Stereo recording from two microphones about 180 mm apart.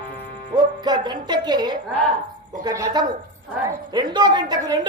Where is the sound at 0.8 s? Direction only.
25° right (ahead or behind).